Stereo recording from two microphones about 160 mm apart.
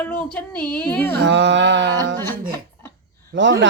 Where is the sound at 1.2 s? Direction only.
90° right.